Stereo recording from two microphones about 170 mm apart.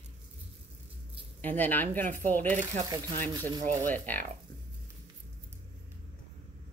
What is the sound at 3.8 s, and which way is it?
Speech, 10° left (ahead or behind).